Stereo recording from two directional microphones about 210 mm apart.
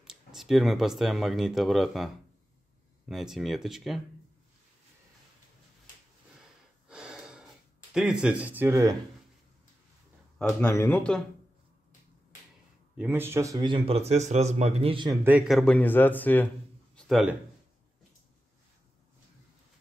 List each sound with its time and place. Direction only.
0.0 s speech: centre (ahead or behind)
3.1 s speech: centre (ahead or behind)
6.9 s snort: 5° right (ahead or behind)
7.9 s speech: 5° right (ahead or behind)
10.6 s a man's voice: 10° left (ahead or behind)
12.9 s a man's voice: 10° right (ahead or behind); by 15.1 s 25° right (ahead or behind)
15.2 s a man's voice: 5° right (ahead or behind)
16.9 s a sound: 5° right (ahead or behind)